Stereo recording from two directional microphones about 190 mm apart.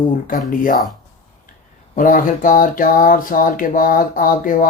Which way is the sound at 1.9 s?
45° left (ahead or behind).